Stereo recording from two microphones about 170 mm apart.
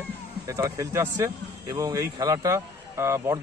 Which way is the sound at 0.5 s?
15° right (ahead or behind).